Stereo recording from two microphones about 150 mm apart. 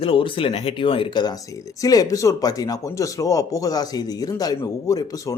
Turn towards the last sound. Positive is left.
turn(degrees=25)  # may be behind; listen again after turning